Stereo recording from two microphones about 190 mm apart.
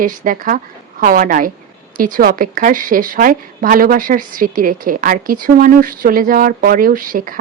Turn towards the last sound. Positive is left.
turn(degrees=-45)  # may be behind; listen again after turning